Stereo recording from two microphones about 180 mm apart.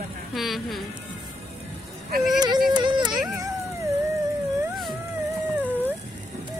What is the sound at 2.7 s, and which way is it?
Whimper, 25° right (ahead or behind).